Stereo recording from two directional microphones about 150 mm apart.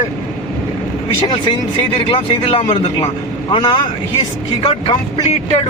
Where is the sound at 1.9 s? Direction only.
35° left (ahead or behind).